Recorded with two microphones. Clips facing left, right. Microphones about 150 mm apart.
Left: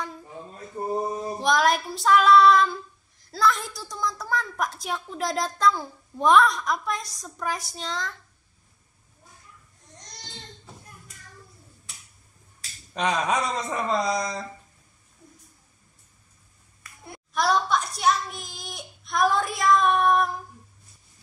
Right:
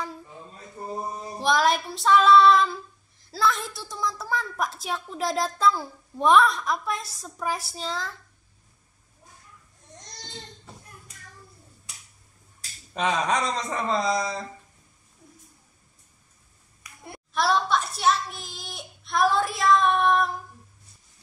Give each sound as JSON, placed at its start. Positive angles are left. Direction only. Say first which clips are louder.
{"t": 1.4, "sound": "child singing", "louder": "even", "side_deg": 0}
{"t": 12.9, "sound": "child singing", "louder": "even", "side_deg": 0}
{"t": 16.8, "sound": "a sound", "louder": "even", "side_deg": -15}
{"t": 17.3, "sound": "child singing", "louder": "even", "side_deg": 0}